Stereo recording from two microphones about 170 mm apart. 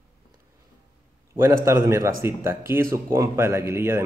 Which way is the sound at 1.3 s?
15° right (ahead or behind).